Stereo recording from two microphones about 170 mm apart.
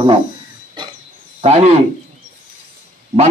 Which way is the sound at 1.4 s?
40° right (ahead or behind).